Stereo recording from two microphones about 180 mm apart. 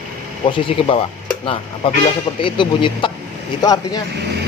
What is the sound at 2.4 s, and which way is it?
Speech, 25° left (ahead or behind).